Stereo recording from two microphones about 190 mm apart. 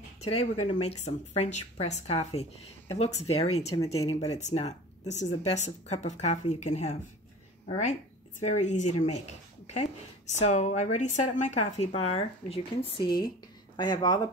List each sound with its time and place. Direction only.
0.4 s speech: 35° left (ahead or behind)
10.3 s speech: 35° left (ahead or behind); by 14.2 s 20° left (ahead or behind)